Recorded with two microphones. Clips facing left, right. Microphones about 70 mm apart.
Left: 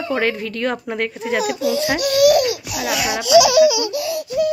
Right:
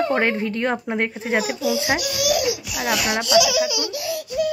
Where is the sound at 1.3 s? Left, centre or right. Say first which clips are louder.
Left 2 dB; centre.